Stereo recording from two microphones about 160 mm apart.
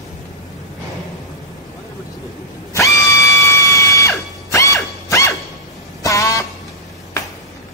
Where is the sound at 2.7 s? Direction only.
20° left (ahead or behind).